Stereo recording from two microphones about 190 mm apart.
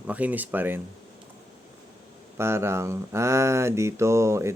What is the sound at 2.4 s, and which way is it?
Speech, 15° right (ahead or behind).